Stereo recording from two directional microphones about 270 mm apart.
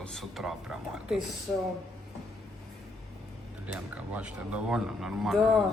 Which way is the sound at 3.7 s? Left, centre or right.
Centre.